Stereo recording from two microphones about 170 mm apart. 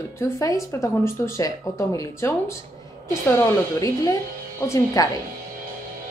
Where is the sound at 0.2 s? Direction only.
20° left (ahead or behind).